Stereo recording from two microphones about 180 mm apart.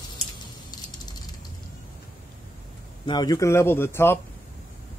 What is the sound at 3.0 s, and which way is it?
A man's voice, 25° left (ahead or behind).